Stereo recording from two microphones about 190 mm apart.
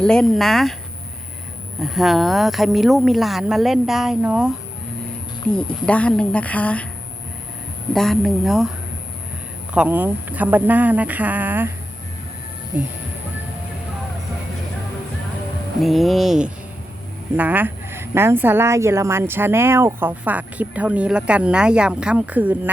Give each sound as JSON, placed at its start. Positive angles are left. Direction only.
{"t": 0.0, "sound": "speech", "side_deg": 5}
{"t": 1.8, "sound": "speech", "side_deg": 0}
{"t": 5.5, "sound": "speech", "side_deg": 5}
{"t": 7.9, "sound": "speech", "side_deg": 0}
{"t": 9.7, "sound": "speech", "side_deg": -10}
{"t": 15.8, "sound": "speech", "side_deg": 0}